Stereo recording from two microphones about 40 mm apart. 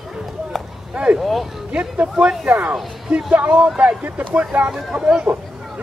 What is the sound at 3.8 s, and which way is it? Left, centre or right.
Speech, right.